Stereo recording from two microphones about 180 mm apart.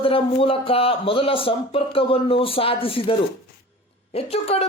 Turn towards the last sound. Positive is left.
turn(degrees=35)  # may be behind; listen again after turning